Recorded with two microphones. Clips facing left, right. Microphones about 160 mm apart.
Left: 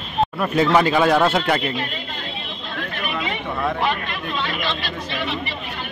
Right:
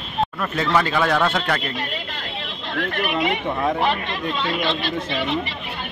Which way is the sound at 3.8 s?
25° right (ahead or behind).